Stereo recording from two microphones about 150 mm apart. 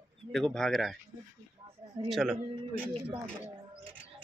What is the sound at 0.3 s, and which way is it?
Speech, 5° left (ahead or behind).